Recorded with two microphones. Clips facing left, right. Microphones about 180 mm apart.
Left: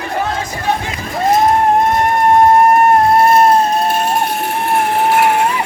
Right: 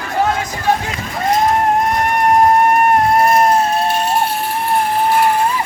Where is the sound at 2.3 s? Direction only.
30° left (ahead or behind).